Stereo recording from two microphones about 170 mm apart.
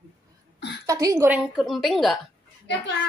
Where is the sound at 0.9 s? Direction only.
20° right (ahead or behind).